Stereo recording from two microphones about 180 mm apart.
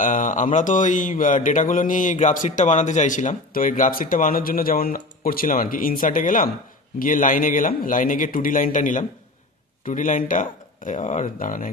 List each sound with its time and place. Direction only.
0.0 s speech: 45° left (ahead or behind)